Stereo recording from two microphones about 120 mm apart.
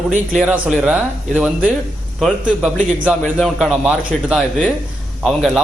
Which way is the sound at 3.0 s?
10° right (ahead or behind).